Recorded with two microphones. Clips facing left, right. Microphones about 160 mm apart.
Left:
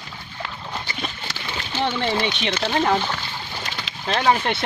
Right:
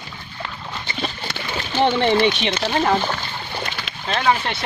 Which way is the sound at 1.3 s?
55° right (ahead or behind).